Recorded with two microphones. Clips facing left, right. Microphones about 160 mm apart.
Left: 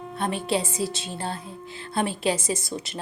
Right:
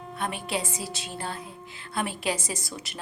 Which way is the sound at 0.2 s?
30° left (ahead or behind).